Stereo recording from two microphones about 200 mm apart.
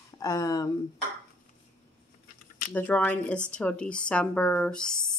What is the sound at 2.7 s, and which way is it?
A woman's voice, 10° left (ahead or behind).